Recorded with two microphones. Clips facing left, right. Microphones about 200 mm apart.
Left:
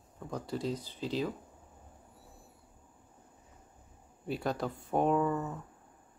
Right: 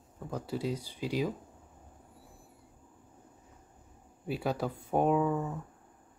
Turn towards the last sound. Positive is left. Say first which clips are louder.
# right 1 dB
turn(degrees=-10)  # may be behind; listen again after turning